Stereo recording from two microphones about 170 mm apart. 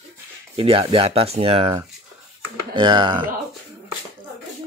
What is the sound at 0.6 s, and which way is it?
Speech, 35° right (ahead or behind).